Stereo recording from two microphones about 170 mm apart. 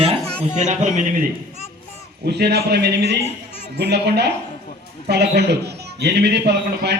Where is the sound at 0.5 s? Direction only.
45° right (ahead or behind).